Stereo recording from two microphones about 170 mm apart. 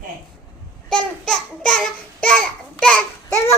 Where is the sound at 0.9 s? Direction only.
5° left (ahead or behind).